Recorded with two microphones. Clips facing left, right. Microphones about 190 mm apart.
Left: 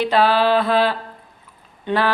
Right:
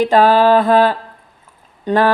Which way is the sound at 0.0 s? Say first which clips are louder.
Right 5 dB; 45° right (ahead or behind).